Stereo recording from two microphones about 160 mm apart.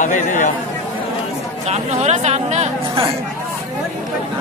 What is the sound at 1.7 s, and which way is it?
Speech, 45° right (ahead or behind).